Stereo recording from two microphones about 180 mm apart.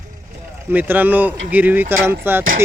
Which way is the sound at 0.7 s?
10° right (ahead or behind).